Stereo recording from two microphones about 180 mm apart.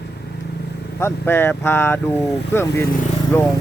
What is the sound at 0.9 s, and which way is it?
Speech, 15° left (ahead or behind).